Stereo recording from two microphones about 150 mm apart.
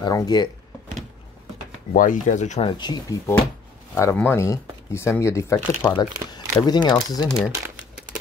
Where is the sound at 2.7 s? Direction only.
30° left (ahead or behind).